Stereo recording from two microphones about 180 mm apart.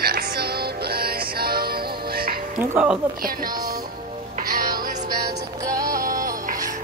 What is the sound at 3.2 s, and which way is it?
Speech, 55° right (ahead or behind).